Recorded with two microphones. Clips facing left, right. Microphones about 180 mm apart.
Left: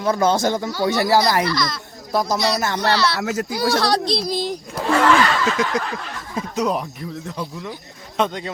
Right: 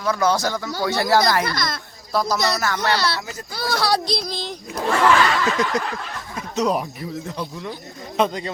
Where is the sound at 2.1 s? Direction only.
20° left (ahead or behind).